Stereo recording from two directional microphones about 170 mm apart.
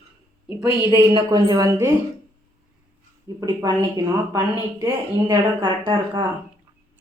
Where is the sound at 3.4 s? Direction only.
20° right (ahead or behind).